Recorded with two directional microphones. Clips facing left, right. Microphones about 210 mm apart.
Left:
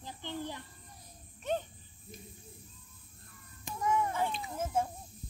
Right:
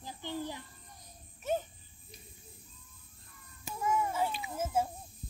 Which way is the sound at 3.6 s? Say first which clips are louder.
Left 1 dB; 5° right (ahead or behind).